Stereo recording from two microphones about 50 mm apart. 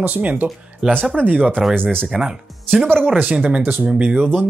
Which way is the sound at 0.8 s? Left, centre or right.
Centre.